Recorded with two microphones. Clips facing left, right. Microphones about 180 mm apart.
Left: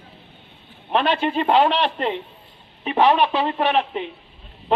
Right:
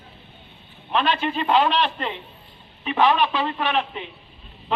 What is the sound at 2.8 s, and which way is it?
Speech, 25° left (ahead or behind).